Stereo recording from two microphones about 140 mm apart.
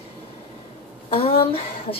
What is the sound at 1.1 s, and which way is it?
Speech, 40° left (ahead or behind).